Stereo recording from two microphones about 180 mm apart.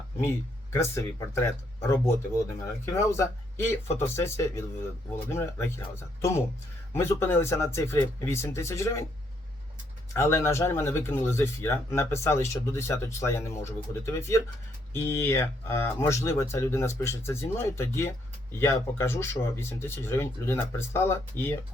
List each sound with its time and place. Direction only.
0.2 s speech: 15° left (ahead or behind)
6.9 s speech: 15° left (ahead or behind)
10.1 s speech: 15° left (ahead or behind)